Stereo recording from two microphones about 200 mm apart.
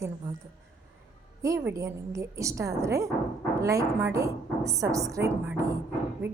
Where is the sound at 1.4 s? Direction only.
15° right (ahead or behind).